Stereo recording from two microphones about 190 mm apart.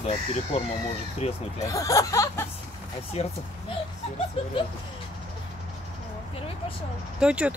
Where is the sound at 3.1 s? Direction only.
30° left (ahead or behind).